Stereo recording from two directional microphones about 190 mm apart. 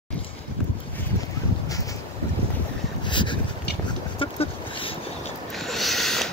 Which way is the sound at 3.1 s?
25° left (ahead or behind).